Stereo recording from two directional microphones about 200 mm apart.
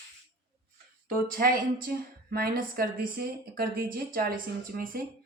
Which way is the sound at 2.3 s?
45° right (ahead or behind).